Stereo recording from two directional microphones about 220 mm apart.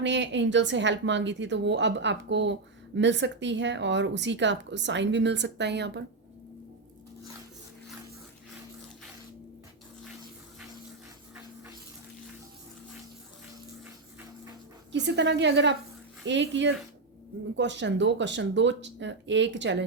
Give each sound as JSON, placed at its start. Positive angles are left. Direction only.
{"t": 0.0, "sound": "a woman's voice", "side_deg": -55}
{"t": 14.9, "sound": "a woman's voice", "side_deg": -50}